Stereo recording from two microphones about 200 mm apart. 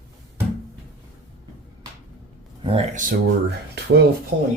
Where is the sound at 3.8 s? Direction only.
55° right (ahead or behind).